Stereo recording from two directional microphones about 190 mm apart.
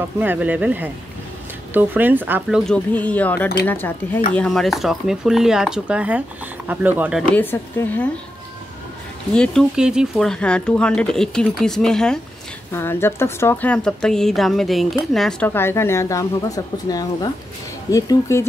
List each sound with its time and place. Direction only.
0.2 s speech: 10° right (ahead or behind)
2.6 s speech: 5° left (ahead or behind)
7.3 s speech: 10° left (ahead or behind)
9.3 s speech: 5° left (ahead or behind)